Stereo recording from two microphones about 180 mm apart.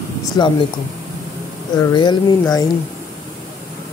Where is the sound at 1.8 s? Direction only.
20° left (ahead or behind).